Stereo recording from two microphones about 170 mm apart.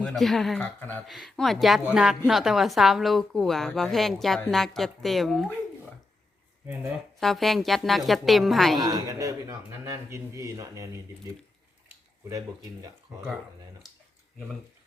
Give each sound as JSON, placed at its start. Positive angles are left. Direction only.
{"t": 0.2, "sound": "a woman's voice", "side_deg": 0}
{"t": 7.2, "sound": "a woman's voice", "side_deg": 0}
{"t": 8.8, "sound": "a man's voice", "side_deg": -20}